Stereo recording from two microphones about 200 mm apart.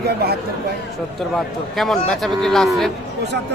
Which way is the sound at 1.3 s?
Centre (ahead or behind).